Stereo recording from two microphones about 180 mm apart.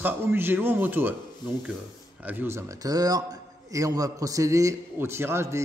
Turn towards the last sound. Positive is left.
turn(degrees=-15)  # may be behind; listen again after turning